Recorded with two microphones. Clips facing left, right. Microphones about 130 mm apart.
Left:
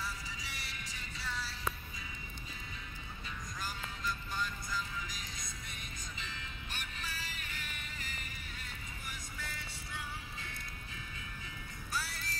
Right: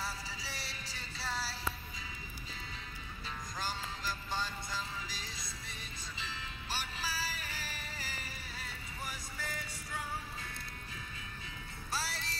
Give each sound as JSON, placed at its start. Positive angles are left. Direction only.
{"t": 0.0, "sound": "music", "side_deg": -35}
{"t": 3.3, "sound": "music", "side_deg": -30}
{"t": 11.9, "sound": "music", "side_deg": -30}